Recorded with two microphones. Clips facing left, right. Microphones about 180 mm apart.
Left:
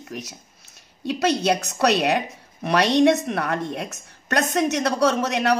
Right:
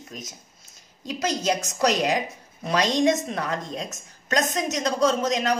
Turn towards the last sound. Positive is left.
turn(degrees=70)  # may be behind; listen again after turning